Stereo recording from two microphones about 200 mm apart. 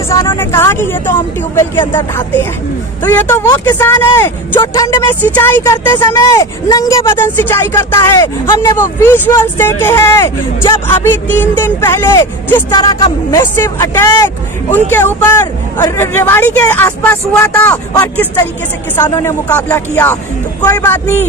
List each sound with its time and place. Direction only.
0.1 s speech: 15° left (ahead or behind)
12.7 s speech: 20° left (ahead or behind)
18.9 s speech: 15° left (ahead or behind)